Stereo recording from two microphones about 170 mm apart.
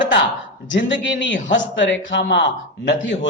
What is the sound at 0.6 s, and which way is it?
A man's voice, 90° left.